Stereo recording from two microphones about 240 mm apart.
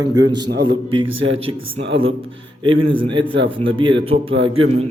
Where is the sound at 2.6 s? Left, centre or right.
Right.